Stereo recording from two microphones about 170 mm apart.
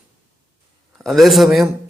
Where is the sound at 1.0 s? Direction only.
Centre (ahead or behind).